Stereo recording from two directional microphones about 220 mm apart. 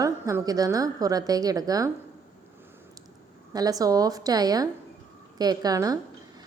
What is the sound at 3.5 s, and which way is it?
A woman's voice, 15° right (ahead or behind).